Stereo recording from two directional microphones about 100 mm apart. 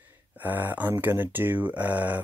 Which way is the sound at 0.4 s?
15° right (ahead or behind).